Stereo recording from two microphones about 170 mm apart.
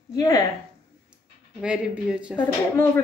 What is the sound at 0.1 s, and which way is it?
Speech, 20° left (ahead or behind).